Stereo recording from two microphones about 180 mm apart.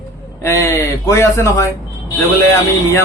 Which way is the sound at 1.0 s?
15° left (ahead or behind).